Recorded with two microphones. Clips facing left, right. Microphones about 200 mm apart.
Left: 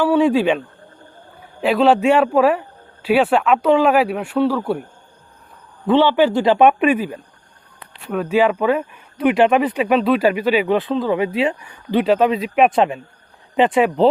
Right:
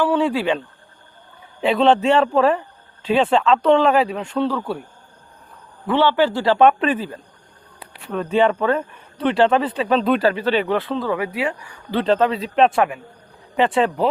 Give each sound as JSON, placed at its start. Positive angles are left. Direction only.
{"t": 0.0, "sound": "speech", "side_deg": 15}
{"t": 1.6, "sound": "speech", "side_deg": 5}
{"t": 5.9, "sound": "speech", "side_deg": 15}